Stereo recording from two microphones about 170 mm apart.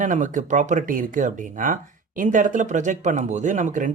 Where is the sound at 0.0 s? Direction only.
50° right (ahead or behind).